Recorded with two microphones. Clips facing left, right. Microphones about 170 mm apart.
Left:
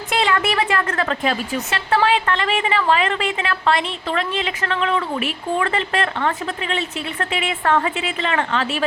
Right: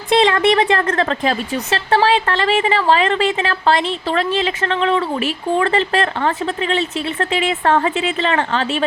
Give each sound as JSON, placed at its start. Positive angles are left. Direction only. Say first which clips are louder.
{"t": 0.1, "sound": "a woman's voice", "louder": "right 7 dB", "side_deg": -30}